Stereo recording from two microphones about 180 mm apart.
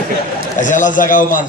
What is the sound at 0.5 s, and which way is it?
Speech, 45° left (ahead or behind).